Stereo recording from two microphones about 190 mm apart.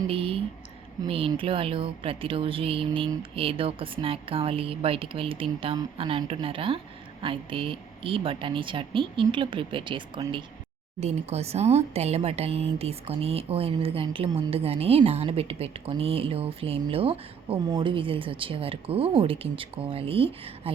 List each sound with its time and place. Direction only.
0.1 s speech: 30° right (ahead or behind)